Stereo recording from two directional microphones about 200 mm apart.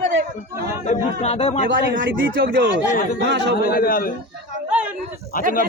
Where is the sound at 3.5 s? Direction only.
45° left (ahead or behind).